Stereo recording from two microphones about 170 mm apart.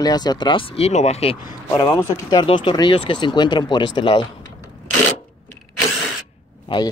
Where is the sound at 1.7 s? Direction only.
20° left (ahead or behind).